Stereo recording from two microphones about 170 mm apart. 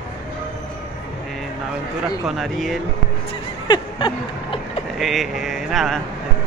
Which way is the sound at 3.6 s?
30° left (ahead or behind).